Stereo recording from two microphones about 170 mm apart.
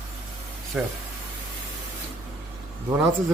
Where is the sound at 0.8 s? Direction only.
10° right (ahead or behind).